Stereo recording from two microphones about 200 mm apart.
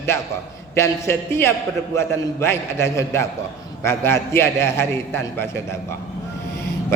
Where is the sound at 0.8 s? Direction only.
15° left (ahead or behind).